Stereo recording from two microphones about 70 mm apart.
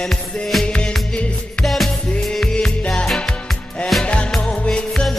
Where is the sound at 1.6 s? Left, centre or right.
Centre.